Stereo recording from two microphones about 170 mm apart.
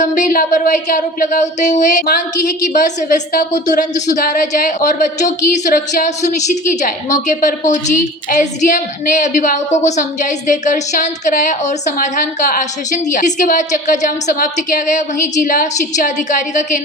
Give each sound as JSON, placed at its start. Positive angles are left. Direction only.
{"t": 0.0, "sound": "a woman's voice", "side_deg": 50}